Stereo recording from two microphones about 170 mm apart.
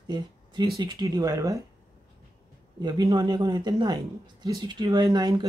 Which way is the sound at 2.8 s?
25° right (ahead or behind).